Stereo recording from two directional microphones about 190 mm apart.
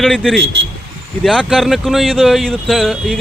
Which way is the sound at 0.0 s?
Centre (ahead or behind).